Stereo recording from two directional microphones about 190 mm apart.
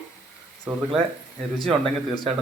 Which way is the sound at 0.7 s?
5° right (ahead or behind).